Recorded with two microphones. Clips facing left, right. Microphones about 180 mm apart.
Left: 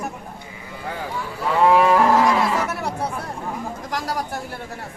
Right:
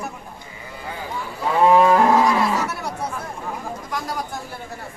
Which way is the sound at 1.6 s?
20° right (ahead or behind).